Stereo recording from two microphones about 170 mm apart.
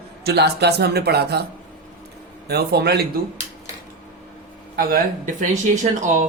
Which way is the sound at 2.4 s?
70° right (ahead or behind).